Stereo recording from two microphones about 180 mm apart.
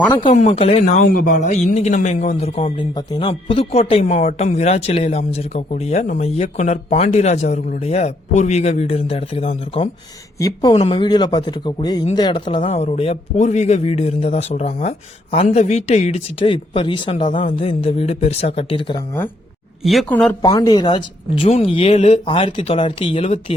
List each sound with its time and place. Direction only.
0.3 s speech: 35° left (ahead or behind)
10.3 s a woman's voice: 20° left (ahead or behind)
19.8 s speech: centre (ahead or behind)
20.4 s speech: 20° left (ahead or behind)